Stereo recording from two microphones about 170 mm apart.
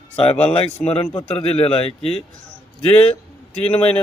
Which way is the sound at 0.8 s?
35° left (ahead or behind).